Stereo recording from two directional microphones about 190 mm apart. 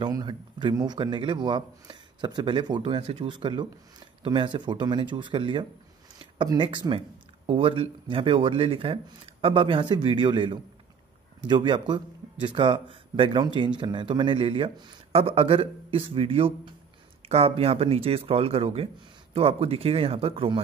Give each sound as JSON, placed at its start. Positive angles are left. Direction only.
{"t": 0.0, "sound": "speech", "side_deg": -25}